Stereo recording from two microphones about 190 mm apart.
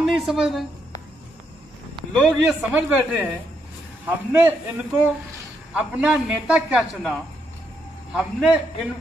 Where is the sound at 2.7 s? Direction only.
10° right (ahead or behind).